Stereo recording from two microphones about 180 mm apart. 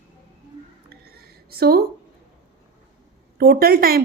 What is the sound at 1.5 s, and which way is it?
Speech, 60° right (ahead or behind).